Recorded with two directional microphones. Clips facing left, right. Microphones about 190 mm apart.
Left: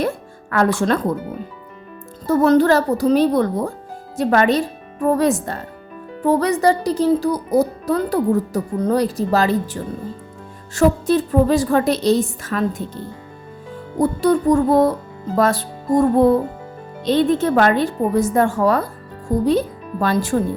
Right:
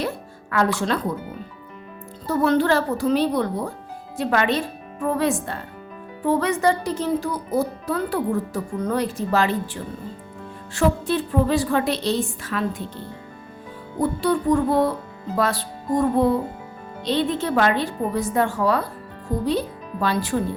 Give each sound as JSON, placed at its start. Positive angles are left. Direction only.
{"t": 0.5, "sound": "a woman's voice", "side_deg": 50}
{"t": 2.2, "sound": "a woman's voice", "side_deg": 45}
{"t": 14.0, "sound": "a woman's voice", "side_deg": 45}